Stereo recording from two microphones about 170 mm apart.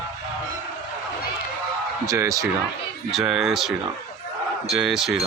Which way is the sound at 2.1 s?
20° right (ahead or behind).